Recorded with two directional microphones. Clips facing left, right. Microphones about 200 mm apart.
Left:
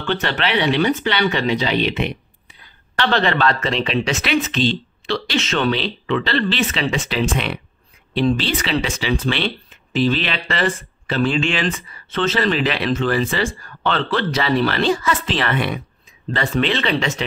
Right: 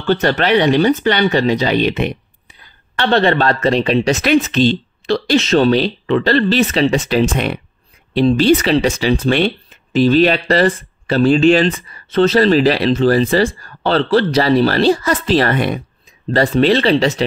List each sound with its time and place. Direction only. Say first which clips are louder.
0.0 s speech: right 7 dB; 40° right (ahead or behind)
3.1 s speech: right 5 dB; 35° right (ahead or behind)